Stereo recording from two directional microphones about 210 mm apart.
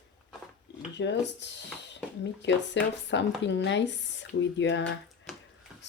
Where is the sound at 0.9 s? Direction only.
55° left (ahead or behind).